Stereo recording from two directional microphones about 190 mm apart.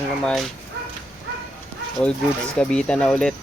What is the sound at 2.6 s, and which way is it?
Speech, 5° left (ahead or behind).